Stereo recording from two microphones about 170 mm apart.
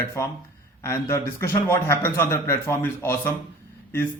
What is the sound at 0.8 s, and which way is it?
A man's voice, 15° left (ahead or behind).